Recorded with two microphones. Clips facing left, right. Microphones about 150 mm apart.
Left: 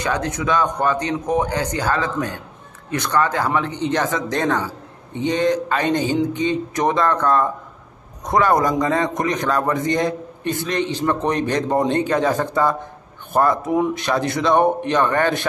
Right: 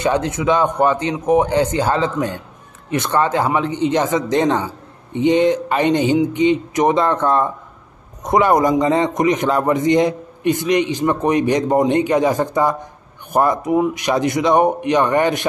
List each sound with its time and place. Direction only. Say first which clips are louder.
0.0 s a man's voice: right 5 dB; 20° right (ahead or behind)
13.7 s speech: right 2 dB; 5° right (ahead or behind)
14.0 s a man's voice: right 3 dB; 15° right (ahead or behind)